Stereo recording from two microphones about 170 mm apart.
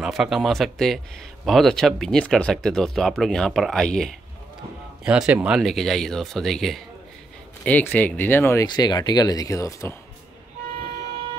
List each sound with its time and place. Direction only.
0.0 s speech: 5° right (ahead or behind)
5.0 s speech: 5° right (ahead or behind); by 8.6 s 15° left (ahead or behind)
8.6 s speech: 25° left (ahead or behind)